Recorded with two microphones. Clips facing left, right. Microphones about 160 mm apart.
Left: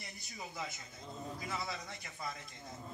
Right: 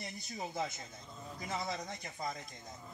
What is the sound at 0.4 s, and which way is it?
Speech, 45° right (ahead or behind).